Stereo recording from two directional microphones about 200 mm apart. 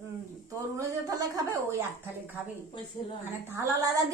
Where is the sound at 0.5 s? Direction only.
15° right (ahead or behind).